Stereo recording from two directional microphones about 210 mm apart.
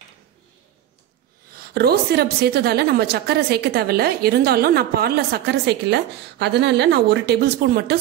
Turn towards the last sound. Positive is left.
turn(degrees=-50)  # may be behind; listen again after turning